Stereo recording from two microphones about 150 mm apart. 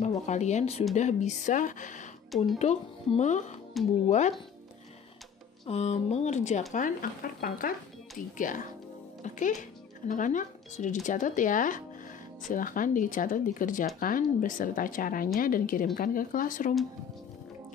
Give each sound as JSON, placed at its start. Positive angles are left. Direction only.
{"t": 0.0, "sound": "speech", "side_deg": 50}
{"t": 2.3, "sound": "speech", "side_deg": 0}
{"t": 2.6, "sound": "speech", "side_deg": 50}
{"t": 3.8, "sound": "speech", "side_deg": 0}
{"t": 5.7, "sound": "speech", "side_deg": 45}
{"t": 6.7, "sound": "speech", "side_deg": 65}